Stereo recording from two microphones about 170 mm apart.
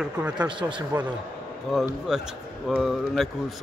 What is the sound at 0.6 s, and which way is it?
Speech, 30° right (ahead or behind).